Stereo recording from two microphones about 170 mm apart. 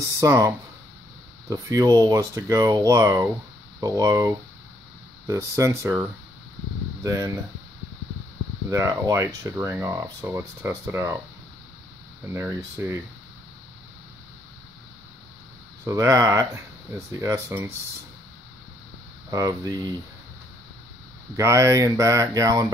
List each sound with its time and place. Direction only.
0.0 s speech: 20° right (ahead or behind)
8.6 s speech: 20° right (ahead or behind)
12.3 s speech: 15° right (ahead or behind)
15.8 s speech: 20° right (ahead or behind)
19.3 s speech: 20° right (ahead or behind)
21.4 s speech: 15° right (ahead or behind)